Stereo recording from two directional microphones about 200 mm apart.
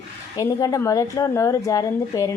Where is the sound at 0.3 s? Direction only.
15° left (ahead or behind).